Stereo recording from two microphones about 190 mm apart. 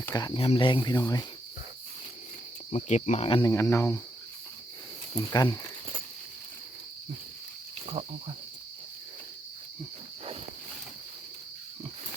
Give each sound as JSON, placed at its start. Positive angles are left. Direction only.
{"t": 0.0, "sound": "speech", "side_deg": 20}
{"t": 2.7, "sound": "speech", "side_deg": 35}
{"t": 3.2, "sound": "speech", "side_deg": 25}
{"t": 3.5, "sound": "speech", "side_deg": 15}
{"t": 5.1, "sound": "speech", "side_deg": 20}
{"t": 8.0, "sound": "speech", "side_deg": -25}